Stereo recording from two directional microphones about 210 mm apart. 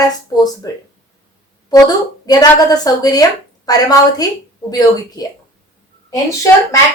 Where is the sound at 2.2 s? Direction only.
20° left (ahead or behind).